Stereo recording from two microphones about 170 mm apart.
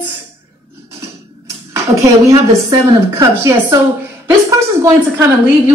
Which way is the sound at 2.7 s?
20° right (ahead or behind).